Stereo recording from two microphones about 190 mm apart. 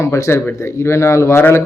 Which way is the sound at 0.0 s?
15° left (ahead or behind).